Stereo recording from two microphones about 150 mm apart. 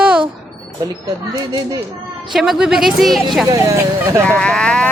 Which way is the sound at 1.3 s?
25° right (ahead or behind).